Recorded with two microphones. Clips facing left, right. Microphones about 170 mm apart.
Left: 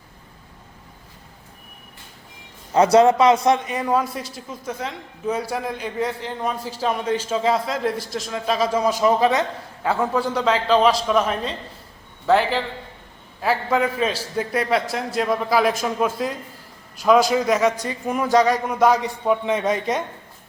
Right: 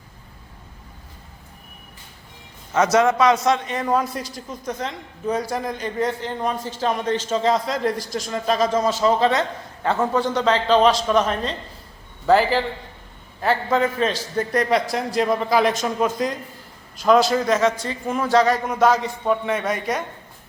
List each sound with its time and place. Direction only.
2.7 s speech: 30° left (ahead or behind)
3.4 s a man's voice: 15° left (ahead or behind)